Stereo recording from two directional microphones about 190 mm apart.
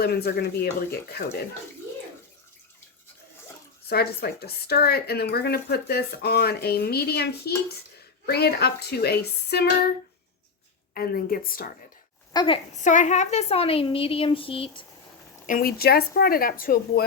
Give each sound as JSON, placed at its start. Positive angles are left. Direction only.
{"t": 0.0, "sound": "speech", "side_deg": 55}
{"t": 3.8, "sound": "speech", "side_deg": 55}
{"t": 10.9, "sound": "speech", "side_deg": 50}
{"t": 12.3, "sound": "a woman's voice", "side_deg": 20}
{"t": 12.7, "sound": "a woman's voice", "side_deg": 40}
{"t": 15.4, "sound": "speech", "side_deg": 50}